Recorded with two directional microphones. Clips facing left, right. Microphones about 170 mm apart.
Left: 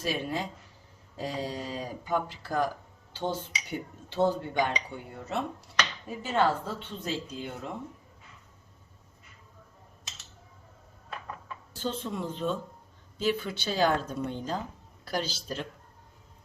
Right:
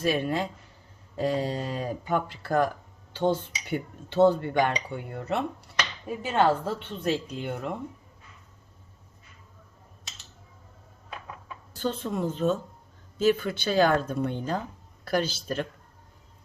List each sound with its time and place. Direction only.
0.0 s speech: 60° right (ahead or behind)
11.8 s a woman's voice: 50° right (ahead or behind)